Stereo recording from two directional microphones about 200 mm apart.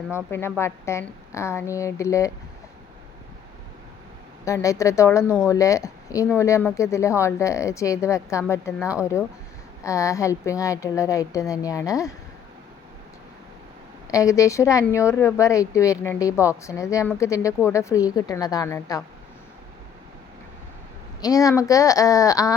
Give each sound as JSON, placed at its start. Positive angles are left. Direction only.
{"t": 0.3, "sound": "speech", "side_deg": 10}
{"t": 4.4, "sound": "a woman's voice", "side_deg": 15}
{"t": 14.1, "sound": "speech", "side_deg": 15}
{"t": 21.2, "sound": "speech", "side_deg": 15}